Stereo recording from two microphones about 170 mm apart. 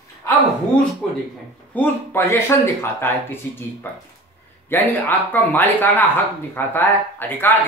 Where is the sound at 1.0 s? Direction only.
Centre (ahead or behind).